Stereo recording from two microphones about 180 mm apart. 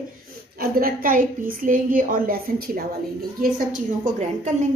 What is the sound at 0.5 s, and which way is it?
A woman's voice, 55° right (ahead or behind).